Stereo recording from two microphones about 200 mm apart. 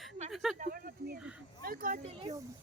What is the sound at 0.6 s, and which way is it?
Speech, 45° right (ahead or behind).